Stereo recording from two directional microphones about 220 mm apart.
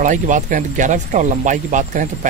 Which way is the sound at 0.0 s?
35° right (ahead or behind).